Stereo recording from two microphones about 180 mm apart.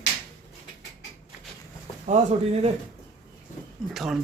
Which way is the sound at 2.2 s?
40° right (ahead or behind).